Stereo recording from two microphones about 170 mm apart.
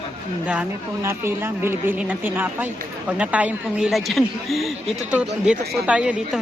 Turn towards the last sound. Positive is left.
turn(degrees=-5)  # may be behind; listen again after turning